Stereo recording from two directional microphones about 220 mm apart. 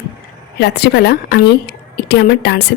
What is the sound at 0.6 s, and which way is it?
Speech, 50° left (ahead or behind).